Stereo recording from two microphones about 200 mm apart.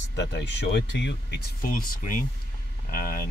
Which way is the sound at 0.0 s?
60° left (ahead or behind).